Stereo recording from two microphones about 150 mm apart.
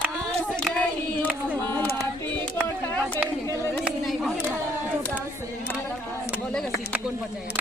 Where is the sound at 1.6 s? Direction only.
10° left (ahead or behind).